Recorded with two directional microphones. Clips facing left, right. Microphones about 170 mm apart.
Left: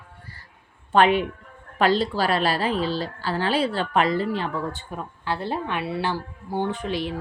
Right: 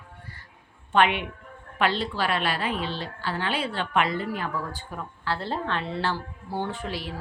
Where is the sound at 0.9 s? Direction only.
35° left (ahead or behind).